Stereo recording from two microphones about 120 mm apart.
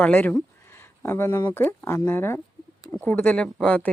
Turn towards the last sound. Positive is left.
turn(degrees=10)  # may be behind; listen again after turning